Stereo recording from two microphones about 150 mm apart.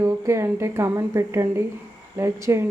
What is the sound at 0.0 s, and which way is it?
A woman's voice, 20° right (ahead or behind).